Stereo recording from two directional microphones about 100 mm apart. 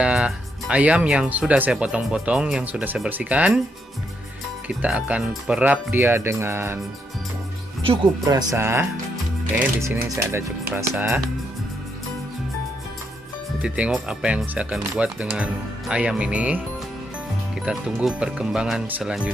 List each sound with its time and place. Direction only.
0.0 s speech: 10° right (ahead or behind)
4.6 s speech: 15° right (ahead or behind)
7.8 s speech: 65° right (ahead or behind)
8.3 s speech: 35° right (ahead or behind)
8.5 s speech: 25° right (ahead or behind)
13.6 s speech: 10° right (ahead or behind)
17.6 s speech: 10° right (ahead or behind)